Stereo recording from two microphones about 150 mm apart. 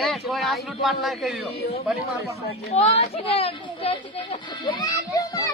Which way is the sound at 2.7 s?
45° left (ahead or behind).